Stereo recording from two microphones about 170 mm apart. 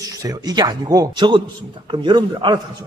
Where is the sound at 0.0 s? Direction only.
20° right (ahead or behind).